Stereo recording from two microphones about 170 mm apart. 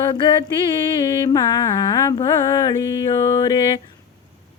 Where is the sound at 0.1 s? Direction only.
30° left (ahead or behind).